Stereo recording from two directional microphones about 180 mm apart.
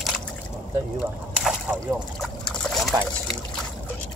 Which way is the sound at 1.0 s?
5° right (ahead or behind).